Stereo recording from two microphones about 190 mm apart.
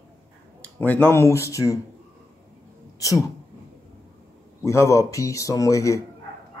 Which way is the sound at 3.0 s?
15° left (ahead or behind).